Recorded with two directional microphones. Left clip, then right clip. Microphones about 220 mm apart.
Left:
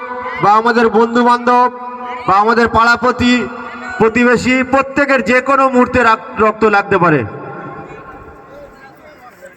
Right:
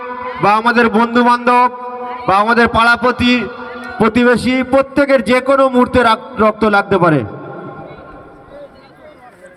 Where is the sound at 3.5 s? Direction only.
60° right (ahead or behind).